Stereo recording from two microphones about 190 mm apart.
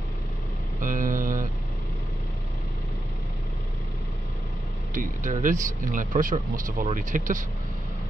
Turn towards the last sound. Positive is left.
turn(degrees=-45)  # may be behind; listen again after turning